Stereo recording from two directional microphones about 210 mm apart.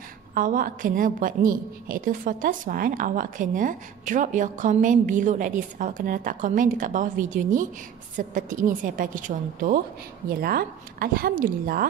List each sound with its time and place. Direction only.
0.3 s a woman's voice: 40° right (ahead or behind)